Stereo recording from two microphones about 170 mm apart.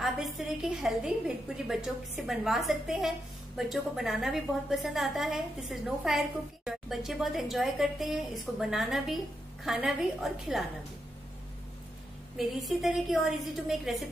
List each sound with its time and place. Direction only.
0.0 s a woman's voice: centre (ahead or behind)
12.4 s a woman's voice: centre (ahead or behind)